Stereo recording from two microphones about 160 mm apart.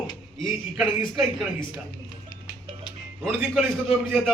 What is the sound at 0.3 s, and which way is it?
Speech, centre (ahead or behind).